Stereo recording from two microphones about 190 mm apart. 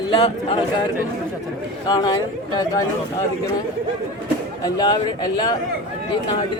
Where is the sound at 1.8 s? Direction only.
20° left (ahead or behind).